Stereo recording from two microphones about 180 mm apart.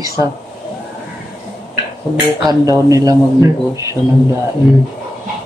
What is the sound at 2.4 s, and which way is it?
Speech, 20° right (ahead or behind).